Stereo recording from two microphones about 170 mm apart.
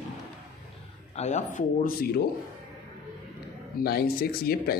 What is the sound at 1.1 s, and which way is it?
Speech, 45° left (ahead or behind).